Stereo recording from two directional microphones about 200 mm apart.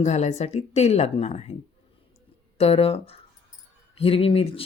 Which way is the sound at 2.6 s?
30° left (ahead or behind).